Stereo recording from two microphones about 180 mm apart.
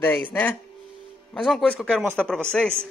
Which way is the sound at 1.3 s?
Centre (ahead or behind).